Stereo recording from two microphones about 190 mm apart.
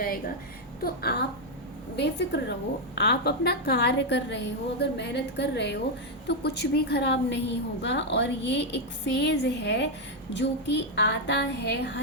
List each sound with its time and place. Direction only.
0.8 s a woman's voice: 55° left (ahead or behind)